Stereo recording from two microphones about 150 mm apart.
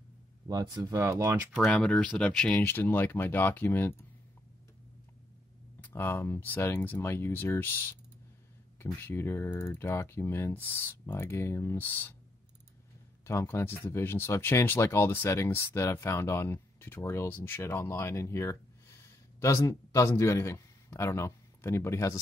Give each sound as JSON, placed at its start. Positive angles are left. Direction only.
{"t": 0.5, "sound": "speech", "side_deg": -25}
{"t": 1.7, "sound": "speech", "side_deg": 5}
{"t": 5.8, "sound": "speech", "side_deg": 15}
{"t": 13.2, "sound": "speech", "side_deg": 15}